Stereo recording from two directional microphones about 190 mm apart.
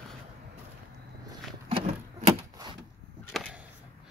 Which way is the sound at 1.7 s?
30° right (ahead or behind).